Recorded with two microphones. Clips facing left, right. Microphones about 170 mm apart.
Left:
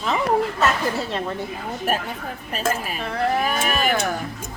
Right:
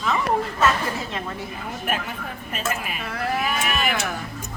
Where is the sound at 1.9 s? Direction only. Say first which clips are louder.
Left 3 dB; 40° left (ahead or behind).